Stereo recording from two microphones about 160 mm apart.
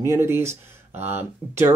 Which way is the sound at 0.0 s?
15° right (ahead or behind).